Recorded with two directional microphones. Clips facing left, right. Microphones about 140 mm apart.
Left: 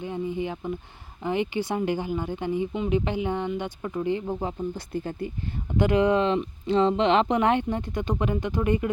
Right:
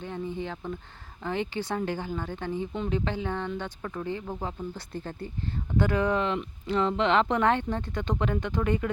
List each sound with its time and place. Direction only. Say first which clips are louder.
0.0 s speech: left 4 dB; 10° left (ahead or behind)